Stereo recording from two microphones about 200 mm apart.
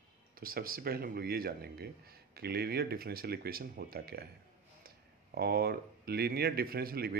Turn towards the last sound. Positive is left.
turn(degrees=-50)  # may be behind; listen again after turning